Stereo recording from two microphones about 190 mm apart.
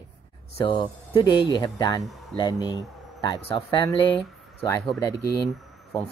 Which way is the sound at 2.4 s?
20° left (ahead or behind).